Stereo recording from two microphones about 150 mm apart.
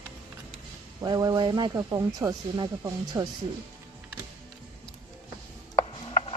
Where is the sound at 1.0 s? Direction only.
25° right (ahead or behind).